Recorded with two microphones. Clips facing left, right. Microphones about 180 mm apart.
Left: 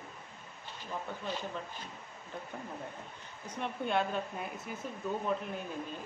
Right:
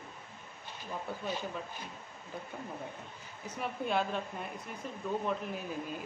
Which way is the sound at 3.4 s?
5° right (ahead or behind).